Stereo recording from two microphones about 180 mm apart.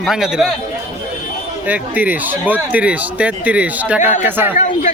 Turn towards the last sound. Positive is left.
turn(degrees=45)  # may be behind; listen again after turning